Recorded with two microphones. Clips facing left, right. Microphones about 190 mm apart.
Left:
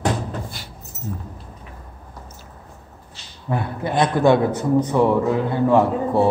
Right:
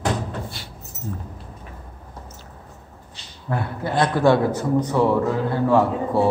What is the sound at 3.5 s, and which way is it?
A man's voice, 20° left (ahead or behind).